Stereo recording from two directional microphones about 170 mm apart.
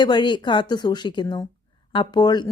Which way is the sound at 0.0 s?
25° left (ahead or behind).